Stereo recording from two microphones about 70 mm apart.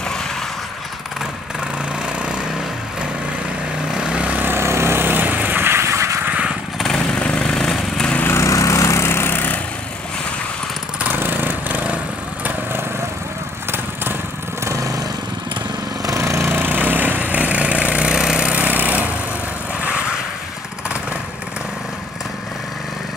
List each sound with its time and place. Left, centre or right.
2.1 s lawn mower: centre
3.9 s vehicle: centre; by 6.1 s right
6.8 s vehicle: centre
8.4 s lawn mower: left
11.1 s vehicle: right
14.6 s vehicle: right
16.1 s vehicle: right; by 20.2 s centre